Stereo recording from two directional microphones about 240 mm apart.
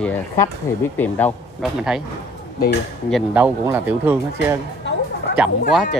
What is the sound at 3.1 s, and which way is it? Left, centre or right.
Speech, centre.